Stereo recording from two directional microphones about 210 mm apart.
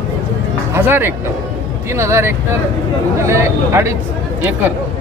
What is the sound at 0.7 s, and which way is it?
Speech, 10° right (ahead or behind).